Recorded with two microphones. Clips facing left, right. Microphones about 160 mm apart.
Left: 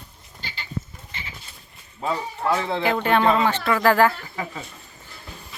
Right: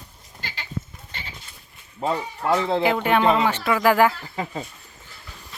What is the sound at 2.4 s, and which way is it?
Speech, 20° right (ahead or behind).